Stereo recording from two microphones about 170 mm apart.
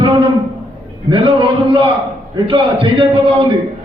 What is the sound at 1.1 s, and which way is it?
Speech, 30° right (ahead or behind).